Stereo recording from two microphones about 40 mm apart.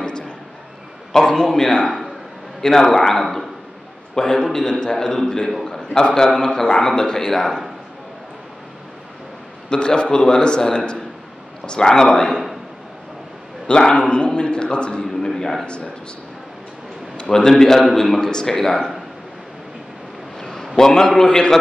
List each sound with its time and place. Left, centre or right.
1.1 s a man's voice: centre
5.7 s a sound: centre
6.1 s a man's voice: centre
9.7 s a man's voice: left
13.7 s a man's voice: left
15.0 s a sound: centre
15.6 s a man's voice: left
17.5 s a man's voice: centre
20.3 s a sound: centre
20.7 s a man's voice: centre